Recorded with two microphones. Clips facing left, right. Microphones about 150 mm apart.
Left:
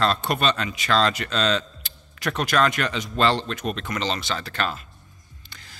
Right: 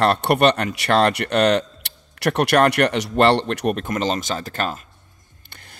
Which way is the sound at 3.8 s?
45° right (ahead or behind).